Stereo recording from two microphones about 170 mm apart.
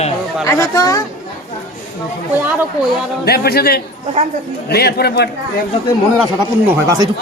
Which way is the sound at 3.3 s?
65° left (ahead or behind).